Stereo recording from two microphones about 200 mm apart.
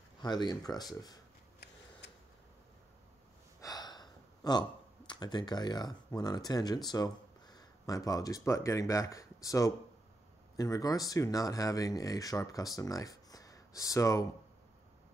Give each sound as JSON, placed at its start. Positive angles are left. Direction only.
{"t": 0.2, "sound": "speech", "side_deg": 20}
{"t": 3.6, "sound": "gasp", "side_deg": 20}
{"t": 6.9, "sound": "speech", "side_deg": 20}